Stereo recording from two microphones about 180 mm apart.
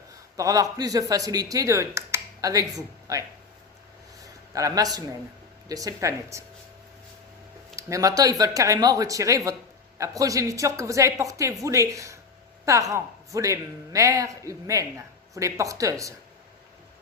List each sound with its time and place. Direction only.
0.3 s speech: 20° right (ahead or behind)
4.5 s a woman's voice: 20° right (ahead or behind)
7.8 s a woman's voice: 15° right (ahead or behind)